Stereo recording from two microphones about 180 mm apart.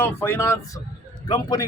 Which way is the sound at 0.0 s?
15° left (ahead or behind).